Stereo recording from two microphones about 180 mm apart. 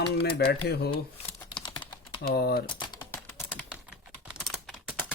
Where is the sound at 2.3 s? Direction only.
60° left (ahead or behind).